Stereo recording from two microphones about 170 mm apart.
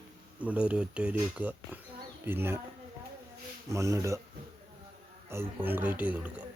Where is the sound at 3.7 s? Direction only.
20° right (ahead or behind).